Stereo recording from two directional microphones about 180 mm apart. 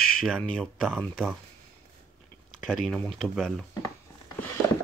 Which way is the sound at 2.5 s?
Centre (ahead or behind).